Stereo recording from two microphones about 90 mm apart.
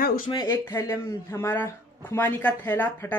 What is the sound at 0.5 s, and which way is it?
Speech, 30° left (ahead or behind).